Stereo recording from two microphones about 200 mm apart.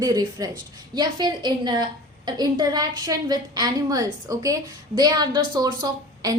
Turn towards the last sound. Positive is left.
turn(degrees=-20)  # may be behind; listen again after turning